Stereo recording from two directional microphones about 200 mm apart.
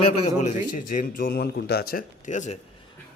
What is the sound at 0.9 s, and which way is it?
Speech, 45° left (ahead or behind).